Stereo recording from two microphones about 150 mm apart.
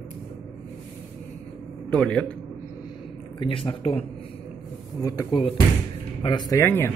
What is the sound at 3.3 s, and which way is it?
Speech, 35° left (ahead or behind).